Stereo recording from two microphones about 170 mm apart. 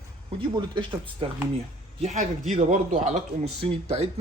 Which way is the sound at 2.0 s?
40° right (ahead or behind).